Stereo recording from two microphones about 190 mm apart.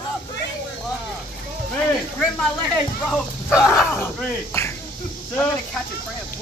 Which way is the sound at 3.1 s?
Centre (ahead or behind).